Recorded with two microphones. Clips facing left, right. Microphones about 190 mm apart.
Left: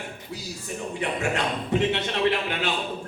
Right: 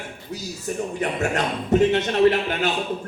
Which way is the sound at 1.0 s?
45° right (ahead or behind).